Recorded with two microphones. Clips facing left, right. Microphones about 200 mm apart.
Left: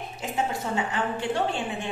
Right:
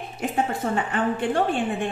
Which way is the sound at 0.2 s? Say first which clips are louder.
Right 4 dB; 55° right (ahead or behind).